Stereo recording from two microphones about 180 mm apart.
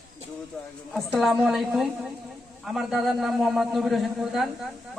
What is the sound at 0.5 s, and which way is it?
A man's voice, 10° left (ahead or behind).